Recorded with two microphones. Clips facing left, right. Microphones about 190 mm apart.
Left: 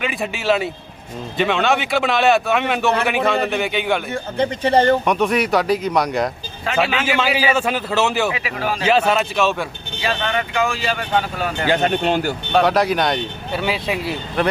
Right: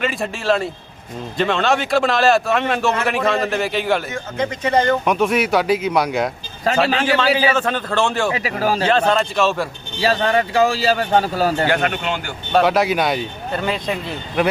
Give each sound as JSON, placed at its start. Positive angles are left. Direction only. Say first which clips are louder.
{"t": 0.0, "sound": "speech", "louder": "right 1 dB", "side_deg": 0}
{"t": 4.1, "sound": "speech", "louder": "left 2 dB", "side_deg": 30}
{"t": 5.0, "sound": "speech", "louder": "even", "side_deg": 0}
{"t": 6.7, "sound": "speech", "louder": "right 3 dB", "side_deg": -40}
{"t": 7.1, "sound": "a man's voice", "louder": "right 2 dB", "side_deg": 10}
{"t": 8.4, "sound": "speech", "louder": "right 4 dB", "side_deg": -40}
{"t": 8.9, "sound": "speech", "louder": "left 4 dB", "side_deg": 10}
{"t": 10.0, "sound": "speech", "louder": "right 5 dB", "side_deg": -35}
{"t": 11.7, "sound": "speech", "louder": "left 3 dB", "side_deg": 30}
{"t": 12.5, "sound": "speech", "louder": "right 1 dB", "side_deg": 0}
{"t": 14.4, "sound": "speech", "louder": "right 1 dB", "side_deg": -5}